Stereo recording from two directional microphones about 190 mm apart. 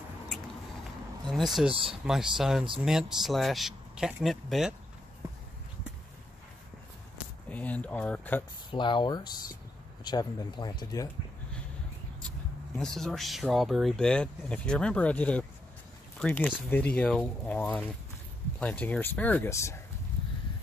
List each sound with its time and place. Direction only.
1.3 s speech: centre (ahead or behind)
1.7 s speech: 30° right (ahead or behind)
2.0 s speech: centre (ahead or behind)
7.4 s speech: 10° left (ahead or behind)
8.6 s speech: 25° left (ahead or behind)
12.7 s speech: 5° left (ahead or behind)